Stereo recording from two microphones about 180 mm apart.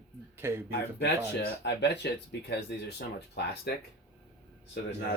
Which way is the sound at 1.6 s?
70° left (ahead or behind).